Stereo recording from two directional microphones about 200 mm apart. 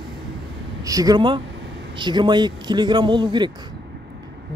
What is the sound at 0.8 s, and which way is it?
Speech, 20° right (ahead or behind).